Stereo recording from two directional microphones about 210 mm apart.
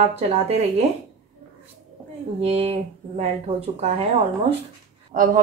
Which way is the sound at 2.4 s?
30° right (ahead or behind).